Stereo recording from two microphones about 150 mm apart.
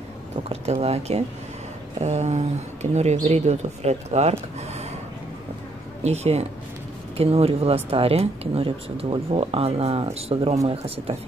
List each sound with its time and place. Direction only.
0.8 s speech: 45° right (ahead or behind)
6.0 s speech: 45° right (ahead or behind)